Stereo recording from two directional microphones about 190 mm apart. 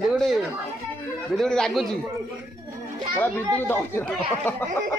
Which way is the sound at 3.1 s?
10° left (ahead or behind).